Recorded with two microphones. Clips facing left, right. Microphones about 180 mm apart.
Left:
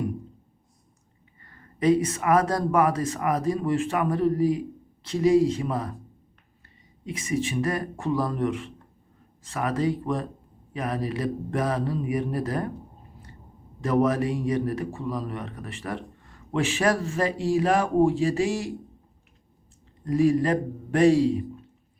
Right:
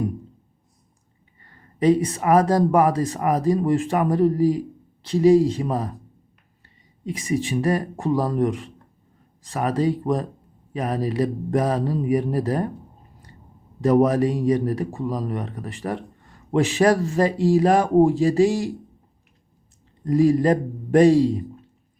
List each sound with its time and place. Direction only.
1.8 s speech: 30° right (ahead or behind)
7.0 s speech: 35° right (ahead or behind)
13.8 s speech: 35° right (ahead or behind)
20.1 s speech: 35° right (ahead or behind)